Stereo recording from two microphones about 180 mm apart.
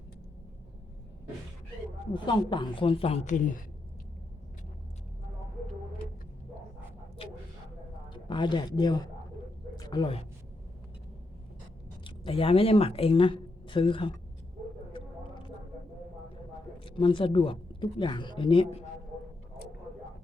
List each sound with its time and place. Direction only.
2.1 s a woman's voice: 25° left (ahead or behind); by 3.6 s 45° left (ahead or behind)
8.1 s a woman's voice: 25° left (ahead or behind)
12.0 s speech: 30° left (ahead or behind)
16.8 s speech: 30° left (ahead or behind)